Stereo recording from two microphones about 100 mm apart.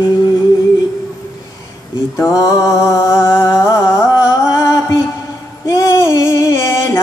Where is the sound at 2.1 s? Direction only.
30° left (ahead or behind).